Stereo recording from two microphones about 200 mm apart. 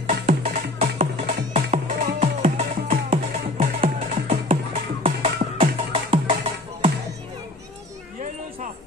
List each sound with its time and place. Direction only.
0.4 s music: 35° right (ahead or behind)